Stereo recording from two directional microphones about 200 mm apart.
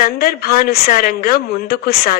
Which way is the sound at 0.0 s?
50° left (ahead or behind).